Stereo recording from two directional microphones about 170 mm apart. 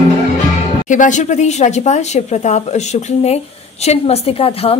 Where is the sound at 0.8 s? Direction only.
50° left (ahead or behind).